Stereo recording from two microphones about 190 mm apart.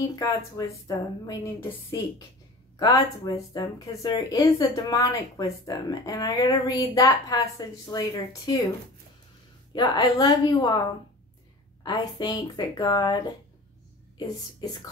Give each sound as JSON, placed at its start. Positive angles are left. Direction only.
{"t": 0.0, "sound": "speech", "side_deg": 20}
{"t": 2.8, "sound": "speech", "side_deg": 20}
{"t": 9.7, "sound": "speech", "side_deg": 25}
{"t": 11.8, "sound": "a woman's voice", "side_deg": 20}